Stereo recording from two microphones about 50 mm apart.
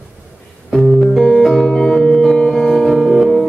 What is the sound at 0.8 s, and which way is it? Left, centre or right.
Music, centre.